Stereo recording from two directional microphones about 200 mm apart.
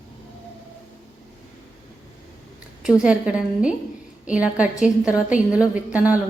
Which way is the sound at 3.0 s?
5° right (ahead or behind).